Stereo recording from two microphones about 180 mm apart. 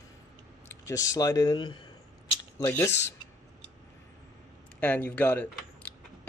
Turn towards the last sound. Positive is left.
turn(degrees=10)  # may be behind; listen again after turning